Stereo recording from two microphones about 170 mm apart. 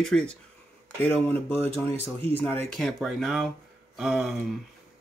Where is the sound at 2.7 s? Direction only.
5° left (ahead or behind).